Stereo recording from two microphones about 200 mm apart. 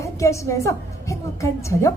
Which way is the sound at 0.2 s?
15° left (ahead or behind).